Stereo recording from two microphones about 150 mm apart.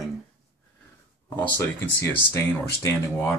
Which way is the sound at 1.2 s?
10° left (ahead or behind).